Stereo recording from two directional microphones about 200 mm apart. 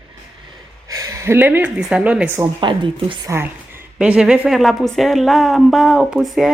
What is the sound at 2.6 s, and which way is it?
Speech, 25° right (ahead or behind).